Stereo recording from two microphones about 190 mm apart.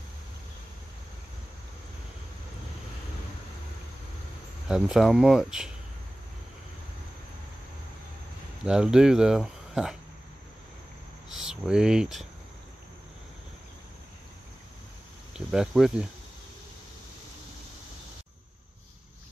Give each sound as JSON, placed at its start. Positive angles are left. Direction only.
{"t": 4.6, "sound": "speech", "side_deg": -5}
{"t": 8.6, "sound": "speech", "side_deg": -5}
{"t": 11.3, "sound": "speech", "side_deg": -5}
{"t": 15.3, "sound": "speech", "side_deg": -5}